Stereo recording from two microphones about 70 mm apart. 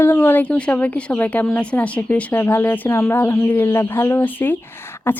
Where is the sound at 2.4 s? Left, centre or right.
Left.